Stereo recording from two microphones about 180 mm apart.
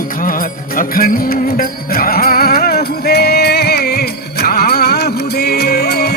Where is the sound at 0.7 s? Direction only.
55° left (ahead or behind).